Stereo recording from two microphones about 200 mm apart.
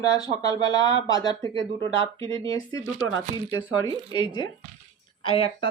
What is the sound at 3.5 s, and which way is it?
Speech, 20° left (ahead or behind).